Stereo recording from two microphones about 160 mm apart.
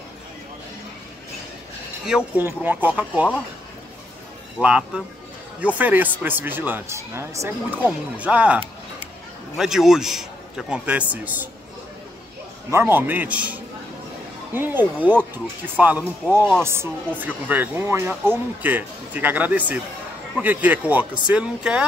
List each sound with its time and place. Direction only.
2.0 s speech: 10° right (ahead or behind)
4.6 s a man's voice: 5° right (ahead or behind)
12.7 s speech: 15° right (ahead or behind)